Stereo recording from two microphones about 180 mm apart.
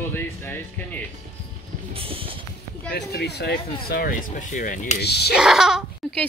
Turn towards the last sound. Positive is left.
turn(degrees=-5)  # may be behind; listen again after turning